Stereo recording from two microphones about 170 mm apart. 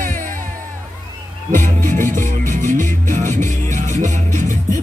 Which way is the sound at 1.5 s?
50° right (ahead or behind).